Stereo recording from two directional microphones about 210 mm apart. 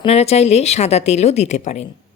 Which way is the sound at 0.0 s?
30° left (ahead or behind).